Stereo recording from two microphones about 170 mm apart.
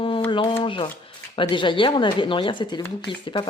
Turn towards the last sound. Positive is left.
turn(degrees=30)  # may be behind; listen again after turning